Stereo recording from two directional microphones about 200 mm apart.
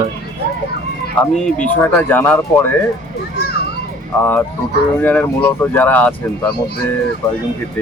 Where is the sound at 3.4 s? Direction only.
55° left (ahead or behind).